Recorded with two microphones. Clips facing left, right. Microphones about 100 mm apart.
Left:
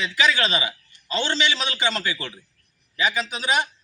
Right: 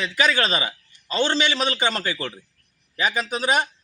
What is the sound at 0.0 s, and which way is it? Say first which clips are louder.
A man's voice: right 1 dB; 40° right (ahead or behind).